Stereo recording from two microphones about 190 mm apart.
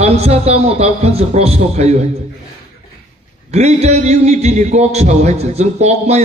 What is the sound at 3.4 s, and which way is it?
A man's voice, 35° right (ahead or behind).